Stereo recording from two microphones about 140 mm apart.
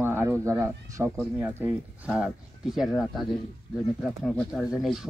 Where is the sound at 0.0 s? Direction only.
15° right (ahead or behind).